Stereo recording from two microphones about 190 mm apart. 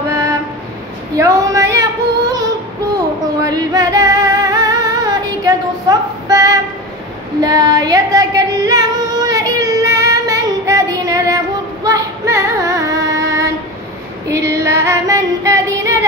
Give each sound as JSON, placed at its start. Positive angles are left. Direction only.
{"t": 1.1, "sound": "child singing", "side_deg": -15}
{"t": 3.4, "sound": "music", "side_deg": -20}
{"t": 7.4, "sound": "female singing", "side_deg": -20}
{"t": 14.3, "sound": "child singing", "side_deg": -15}